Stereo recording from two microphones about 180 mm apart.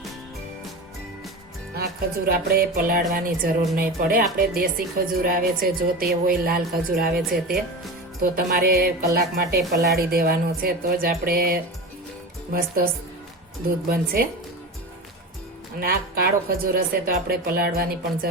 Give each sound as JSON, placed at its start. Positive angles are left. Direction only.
{"t": 2.2, "sound": "speech", "side_deg": -55}
{"t": 15.8, "sound": "speech", "side_deg": -55}